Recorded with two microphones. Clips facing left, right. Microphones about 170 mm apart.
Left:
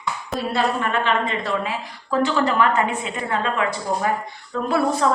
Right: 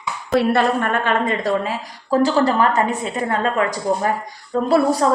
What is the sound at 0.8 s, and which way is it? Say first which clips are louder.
A woman's voice: right 2 dB; 50° right (ahead or behind).